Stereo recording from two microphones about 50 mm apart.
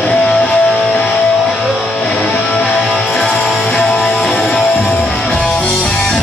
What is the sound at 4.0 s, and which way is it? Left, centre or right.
Music, left.